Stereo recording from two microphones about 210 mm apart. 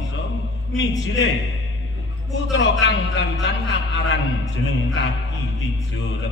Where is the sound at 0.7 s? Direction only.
60° left (ahead or behind).